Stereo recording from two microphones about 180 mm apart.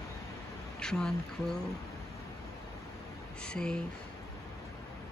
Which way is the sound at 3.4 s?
5° left (ahead or behind).